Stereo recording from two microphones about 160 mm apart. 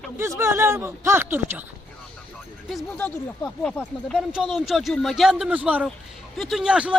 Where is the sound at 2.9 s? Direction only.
10° left (ahead or behind).